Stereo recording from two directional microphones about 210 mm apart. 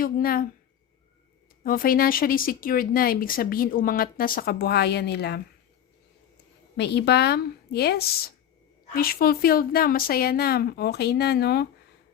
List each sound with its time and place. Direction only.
0.0 s speech: 45° left (ahead or behind)
1.6 s speech: 45° left (ahead or behind)
6.7 s speech: 50° left (ahead or behind)